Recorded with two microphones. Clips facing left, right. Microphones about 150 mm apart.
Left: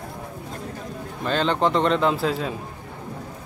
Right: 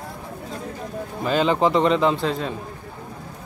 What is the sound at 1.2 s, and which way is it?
A man's voice, 5° right (ahead or behind).